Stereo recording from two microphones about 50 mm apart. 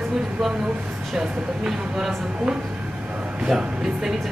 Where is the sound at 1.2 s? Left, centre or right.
Centre.